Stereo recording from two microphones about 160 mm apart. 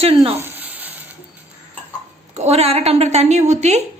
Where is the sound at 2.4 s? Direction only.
40° right (ahead or behind).